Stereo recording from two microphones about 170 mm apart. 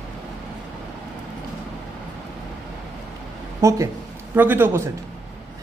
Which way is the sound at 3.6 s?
15° right (ahead or behind).